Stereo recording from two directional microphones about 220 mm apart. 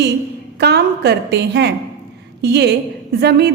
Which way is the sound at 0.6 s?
50° right (ahead or behind).